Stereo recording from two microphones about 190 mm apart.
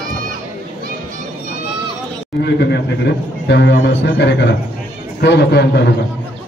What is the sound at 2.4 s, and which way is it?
A man's voice, 60° left (ahead or behind).